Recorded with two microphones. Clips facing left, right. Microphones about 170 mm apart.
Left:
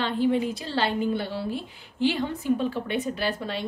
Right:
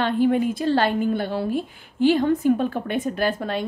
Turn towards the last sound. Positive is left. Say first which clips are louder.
# right 5 dB
turn(degrees=-50)  # may be behind; listen again after turning